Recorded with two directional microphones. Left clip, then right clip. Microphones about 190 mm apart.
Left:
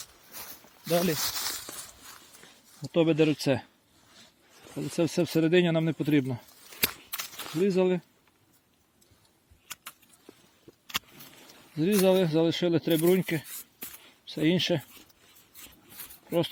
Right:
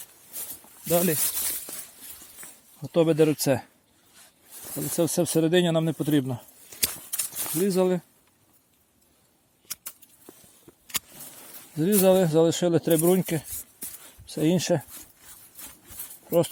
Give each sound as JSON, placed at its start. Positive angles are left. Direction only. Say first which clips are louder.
{"t": 0.9, "sound": "speech", "louder": "right 3 dB", "side_deg": -15}
{"t": 1.2, "sound": "speech", "louder": "left 1 dB", "side_deg": 10}
{"t": 2.8, "sound": "speech", "louder": "right 3 dB", "side_deg": -10}
{"t": 4.9, "sound": "speech", "louder": "right 3 dB", "side_deg": -10}
{"t": 9.6, "sound": "a sound", "louder": "right 2 dB", "side_deg": -25}
{"t": 10.7, "sound": "a sound", "louder": "even", "side_deg": -35}
{"t": 11.8, "sound": "speech", "louder": "right 3 dB", "side_deg": -15}